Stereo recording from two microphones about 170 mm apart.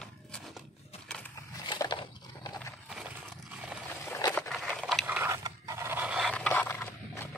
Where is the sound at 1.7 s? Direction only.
30° left (ahead or behind).